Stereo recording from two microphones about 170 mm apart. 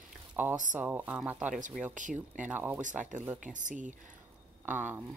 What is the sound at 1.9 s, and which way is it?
Speech, 50° right (ahead or behind).